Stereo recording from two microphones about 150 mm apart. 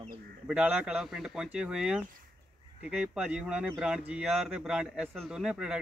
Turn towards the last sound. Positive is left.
turn(degrees=-5)  # may be behind; listen again after turning